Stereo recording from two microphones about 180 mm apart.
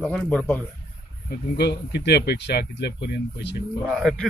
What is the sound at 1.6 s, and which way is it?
Speech, 65° left (ahead or behind).